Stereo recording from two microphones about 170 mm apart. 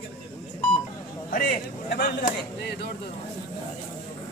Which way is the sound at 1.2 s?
55° left (ahead or behind).